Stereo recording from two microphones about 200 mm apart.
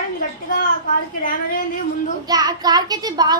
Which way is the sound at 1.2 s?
45° left (ahead or behind).